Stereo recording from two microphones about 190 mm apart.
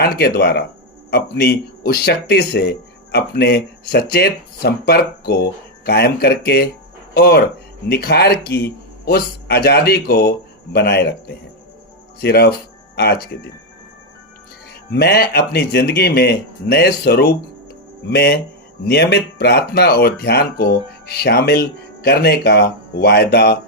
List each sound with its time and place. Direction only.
0.0 s speech: 55° left (ahead or behind)
14.8 s speech: 55° left (ahead or behind)